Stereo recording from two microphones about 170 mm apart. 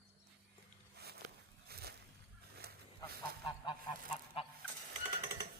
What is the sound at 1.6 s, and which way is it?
Boat, 65° right (ahead or behind).